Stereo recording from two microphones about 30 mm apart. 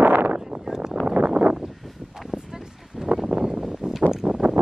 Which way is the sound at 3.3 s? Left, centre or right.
Right.